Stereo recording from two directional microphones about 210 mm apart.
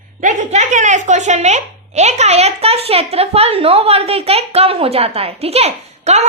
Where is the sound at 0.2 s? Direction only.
35° right (ahead or behind).